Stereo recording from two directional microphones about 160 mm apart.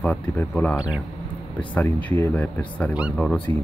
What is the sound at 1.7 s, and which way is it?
A man's voice, 10° left (ahead or behind).